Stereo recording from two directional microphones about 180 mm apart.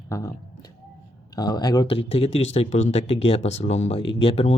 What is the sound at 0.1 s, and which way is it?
Speech, 20° left (ahead or behind).